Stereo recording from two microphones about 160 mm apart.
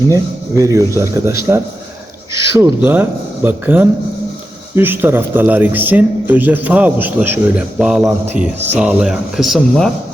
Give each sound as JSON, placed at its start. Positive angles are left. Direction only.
{"t": 0.1, "sound": "a man's voice", "side_deg": -20}